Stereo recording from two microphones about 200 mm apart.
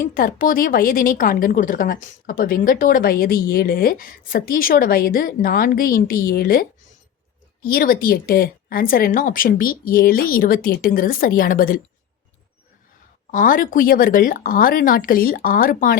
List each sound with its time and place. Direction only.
0.0 s a woman's voice: 45° left (ahead or behind)
13.3 s a woman's voice: 45° left (ahead or behind)